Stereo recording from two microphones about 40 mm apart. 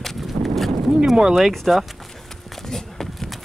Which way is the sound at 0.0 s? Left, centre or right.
Centre.